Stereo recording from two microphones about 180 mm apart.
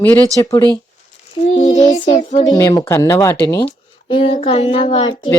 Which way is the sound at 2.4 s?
20° left (ahead or behind).